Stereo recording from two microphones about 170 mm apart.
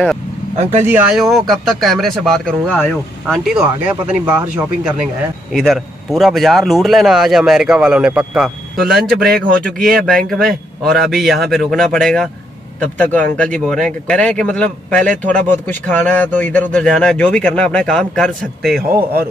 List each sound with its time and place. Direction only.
0.6 s speech: 40° right (ahead or behind)
0.8 s speech: 5° right (ahead or behind)